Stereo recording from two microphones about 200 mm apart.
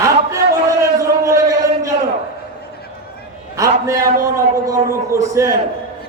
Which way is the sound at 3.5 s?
15° right (ahead or behind).